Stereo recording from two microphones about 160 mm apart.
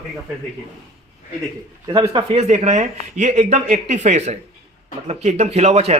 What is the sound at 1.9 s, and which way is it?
Speech, 25° right (ahead or behind).